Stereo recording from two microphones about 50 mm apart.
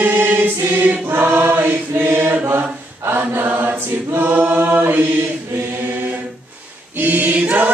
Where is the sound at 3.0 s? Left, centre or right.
Right.